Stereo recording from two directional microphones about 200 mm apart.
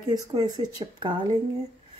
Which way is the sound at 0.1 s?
20° right (ahead or behind).